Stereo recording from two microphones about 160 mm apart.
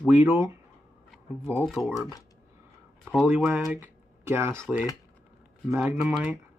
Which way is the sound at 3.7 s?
15° right (ahead or behind).